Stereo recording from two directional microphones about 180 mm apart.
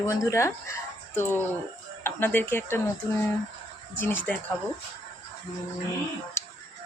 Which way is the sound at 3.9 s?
10° left (ahead or behind).